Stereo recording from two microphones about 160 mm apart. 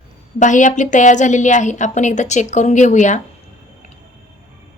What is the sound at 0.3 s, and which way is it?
Speech, 50° left (ahead or behind).